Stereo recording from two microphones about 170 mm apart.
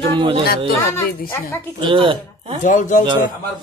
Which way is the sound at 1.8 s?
30° right (ahead or behind).